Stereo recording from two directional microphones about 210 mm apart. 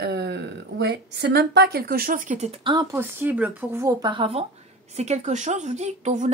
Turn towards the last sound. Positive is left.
turn(degrees=-35)  # may be behind; listen again after turning